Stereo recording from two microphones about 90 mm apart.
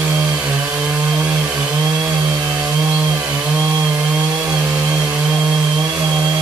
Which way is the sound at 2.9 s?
15° right (ahead or behind).